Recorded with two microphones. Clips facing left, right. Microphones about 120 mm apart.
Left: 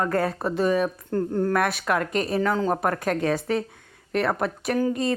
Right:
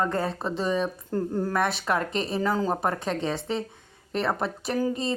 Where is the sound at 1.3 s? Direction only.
5° right (ahead or behind).